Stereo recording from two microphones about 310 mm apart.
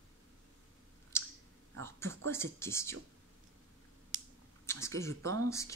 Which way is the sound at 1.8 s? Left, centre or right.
Centre.